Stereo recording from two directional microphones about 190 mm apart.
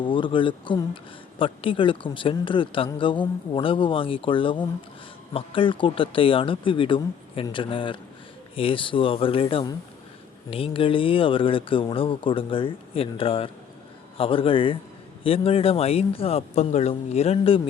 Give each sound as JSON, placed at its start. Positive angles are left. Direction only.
{"t": 0.0, "sound": "speech", "side_deg": 25}